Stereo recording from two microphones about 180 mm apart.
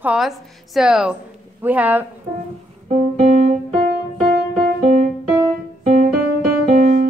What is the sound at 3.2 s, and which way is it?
Music, 40° right (ahead or behind).